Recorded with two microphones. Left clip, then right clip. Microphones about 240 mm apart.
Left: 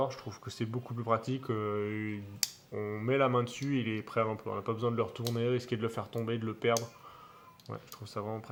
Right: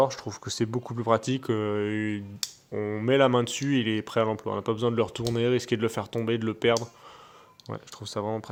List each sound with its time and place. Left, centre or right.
0.0 s speech: right